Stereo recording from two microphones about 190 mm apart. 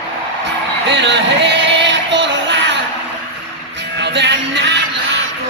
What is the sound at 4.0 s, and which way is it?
Music, 65° right (ahead or behind).